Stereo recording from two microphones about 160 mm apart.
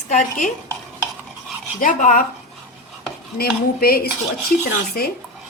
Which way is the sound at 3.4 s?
70° left (ahead or behind).